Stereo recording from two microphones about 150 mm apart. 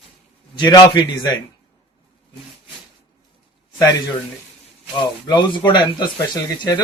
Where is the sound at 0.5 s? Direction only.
25° left (ahead or behind).